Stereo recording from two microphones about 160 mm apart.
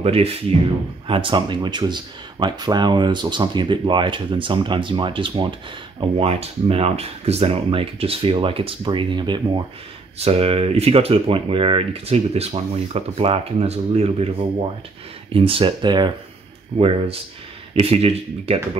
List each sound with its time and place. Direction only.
0.0 s speech: 40° right (ahead or behind)
15.3 s speech: 35° right (ahead or behind)